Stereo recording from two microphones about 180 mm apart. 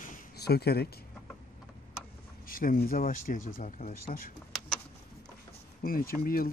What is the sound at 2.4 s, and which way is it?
Speech, 50° left (ahead or behind).